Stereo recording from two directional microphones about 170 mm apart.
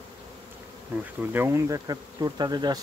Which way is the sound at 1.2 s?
10° right (ahead or behind).